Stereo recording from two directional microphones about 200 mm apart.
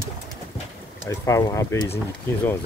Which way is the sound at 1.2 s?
15° left (ahead or behind).